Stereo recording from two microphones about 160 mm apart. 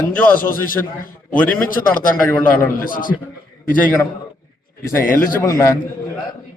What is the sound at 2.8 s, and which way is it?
Speech, 60° left (ahead or behind).